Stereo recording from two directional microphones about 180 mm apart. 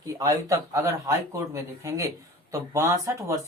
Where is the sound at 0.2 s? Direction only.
20° right (ahead or behind).